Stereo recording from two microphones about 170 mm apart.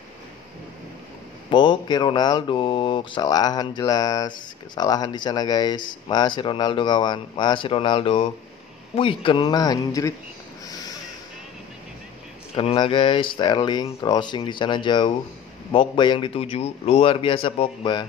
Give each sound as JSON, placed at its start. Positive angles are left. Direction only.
{"t": 1.5, "sound": "speech", "side_deg": 25}
{"t": 12.5, "sound": "a man's voice", "side_deg": 30}